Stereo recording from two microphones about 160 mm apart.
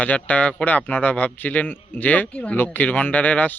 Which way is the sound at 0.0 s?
10° left (ahead or behind).